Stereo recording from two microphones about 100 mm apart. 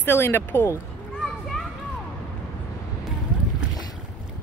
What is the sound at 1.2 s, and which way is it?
Children playing, 5° left (ahead or behind).